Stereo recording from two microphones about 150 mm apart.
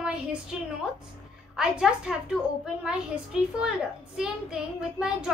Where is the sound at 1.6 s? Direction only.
5° right (ahead or behind).